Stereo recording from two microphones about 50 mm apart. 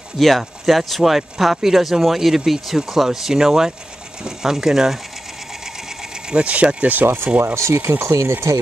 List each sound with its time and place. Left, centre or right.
0.2 s speech: centre
6.3 s speech: right
7.5 s speech: right